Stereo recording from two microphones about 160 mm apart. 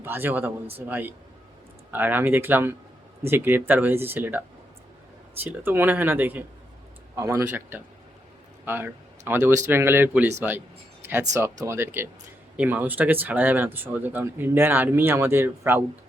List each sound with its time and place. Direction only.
0.0 s speech: 15° right (ahead or behind)
11.3 s speech: 15° right (ahead or behind)